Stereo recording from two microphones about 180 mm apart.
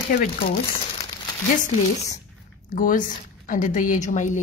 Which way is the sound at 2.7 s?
50° left (ahead or behind).